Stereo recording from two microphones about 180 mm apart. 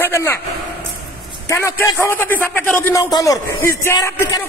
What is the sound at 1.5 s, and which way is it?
A man's voice, 15° left (ahead or behind).